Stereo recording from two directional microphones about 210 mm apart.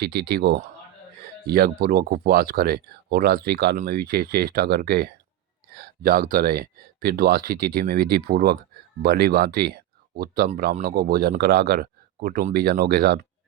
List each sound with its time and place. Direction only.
0.0 s speech: 50° right (ahead or behind)